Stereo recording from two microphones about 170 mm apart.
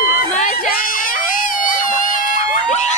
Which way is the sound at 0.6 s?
55° left (ahead or behind).